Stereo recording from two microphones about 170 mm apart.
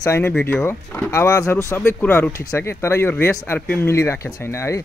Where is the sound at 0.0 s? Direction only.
15° left (ahead or behind).